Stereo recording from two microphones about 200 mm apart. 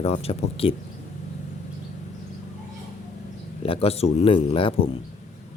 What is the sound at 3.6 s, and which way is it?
Speech, 30° left (ahead or behind).